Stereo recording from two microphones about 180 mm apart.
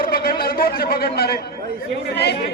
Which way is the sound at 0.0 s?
55° left (ahead or behind).